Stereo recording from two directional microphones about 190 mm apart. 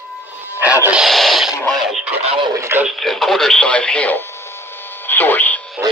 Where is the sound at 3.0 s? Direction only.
Centre (ahead or behind).